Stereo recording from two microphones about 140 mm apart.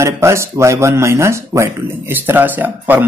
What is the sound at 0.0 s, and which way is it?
Speech, 20° right (ahead or behind).